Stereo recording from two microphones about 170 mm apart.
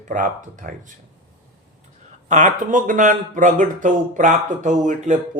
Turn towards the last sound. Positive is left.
turn(degrees=-45)  # may be behind; listen again after turning